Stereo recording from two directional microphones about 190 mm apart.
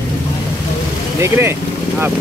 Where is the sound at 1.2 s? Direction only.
15° right (ahead or behind).